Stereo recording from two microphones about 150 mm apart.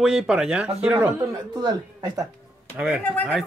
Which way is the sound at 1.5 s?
30° right (ahead or behind).